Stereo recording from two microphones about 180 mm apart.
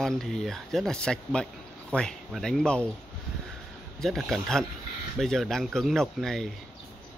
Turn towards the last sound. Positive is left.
turn(degrees=0)  # may be behind; listen again after turning